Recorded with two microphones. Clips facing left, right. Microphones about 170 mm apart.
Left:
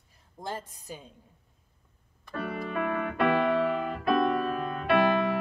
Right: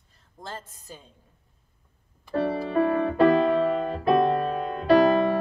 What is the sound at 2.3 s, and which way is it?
Music, 30° right (ahead or behind).